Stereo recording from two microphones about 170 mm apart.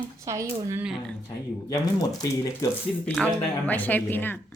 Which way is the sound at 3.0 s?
5° left (ahead or behind).